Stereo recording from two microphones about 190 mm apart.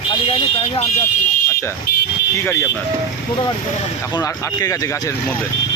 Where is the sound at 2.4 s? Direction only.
15° left (ahead or behind).